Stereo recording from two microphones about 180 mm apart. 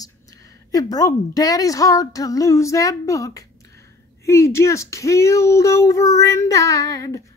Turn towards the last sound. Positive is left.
turn(degrees=20)  # may be behind; listen again after turning